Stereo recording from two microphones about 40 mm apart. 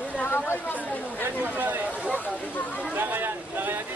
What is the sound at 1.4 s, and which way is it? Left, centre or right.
Speech, right.